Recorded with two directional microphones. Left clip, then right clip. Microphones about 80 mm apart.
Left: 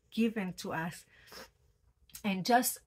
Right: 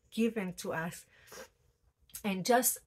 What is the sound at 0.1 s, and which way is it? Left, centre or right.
A woman's voice, right.